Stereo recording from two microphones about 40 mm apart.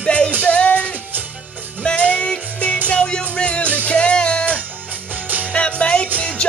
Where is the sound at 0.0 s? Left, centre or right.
Left.